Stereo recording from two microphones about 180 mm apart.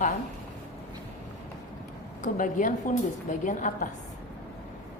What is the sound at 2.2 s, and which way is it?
A woman's voice, 45° left (ahead or behind).